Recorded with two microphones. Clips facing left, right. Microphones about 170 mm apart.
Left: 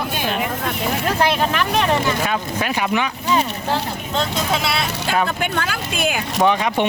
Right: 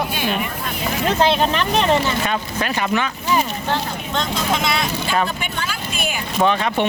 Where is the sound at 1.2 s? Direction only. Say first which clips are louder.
Right 3 dB; 20° right (ahead or behind).